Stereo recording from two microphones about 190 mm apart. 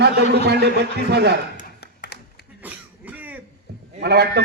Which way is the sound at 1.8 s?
60° left (ahead or behind).